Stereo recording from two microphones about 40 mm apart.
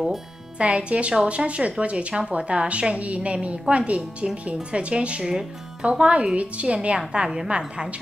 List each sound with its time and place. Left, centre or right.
0.6 s a woman's voice: right
5.2 s speech: centre
5.9 s a woman's voice: right